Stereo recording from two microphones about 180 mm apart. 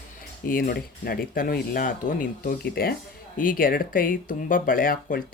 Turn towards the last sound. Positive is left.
turn(degrees=50)  # may be behind; listen again after turning